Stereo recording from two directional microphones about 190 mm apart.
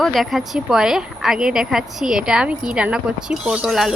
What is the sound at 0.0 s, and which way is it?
A woman's voice, centre (ahead or behind).